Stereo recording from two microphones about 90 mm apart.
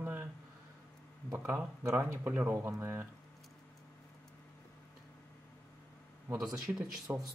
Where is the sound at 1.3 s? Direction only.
25° right (ahead or behind).